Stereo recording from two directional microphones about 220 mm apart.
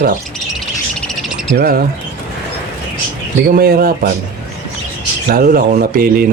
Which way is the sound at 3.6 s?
40° right (ahead or behind).